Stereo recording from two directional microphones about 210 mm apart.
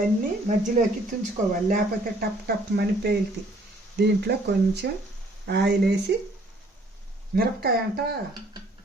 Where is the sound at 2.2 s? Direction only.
50° right (ahead or behind).